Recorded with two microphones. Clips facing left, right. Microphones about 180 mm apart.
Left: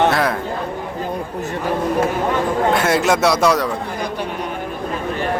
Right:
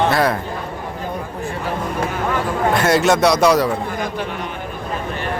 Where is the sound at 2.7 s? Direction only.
5° left (ahead or behind).